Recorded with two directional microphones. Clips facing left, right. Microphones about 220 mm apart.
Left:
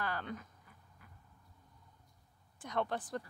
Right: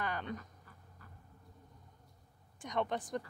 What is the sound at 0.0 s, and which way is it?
Speech, 15° right (ahead or behind).